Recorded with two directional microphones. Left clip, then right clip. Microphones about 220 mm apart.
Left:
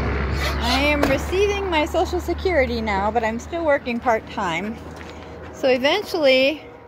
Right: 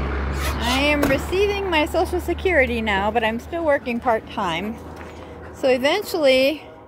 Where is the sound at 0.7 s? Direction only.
Centre (ahead or behind).